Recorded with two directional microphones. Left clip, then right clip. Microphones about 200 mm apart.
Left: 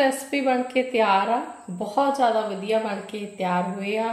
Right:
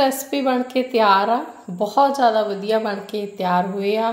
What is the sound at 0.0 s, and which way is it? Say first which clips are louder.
A woman's voice: right 3 dB; 35° right (ahead or behind).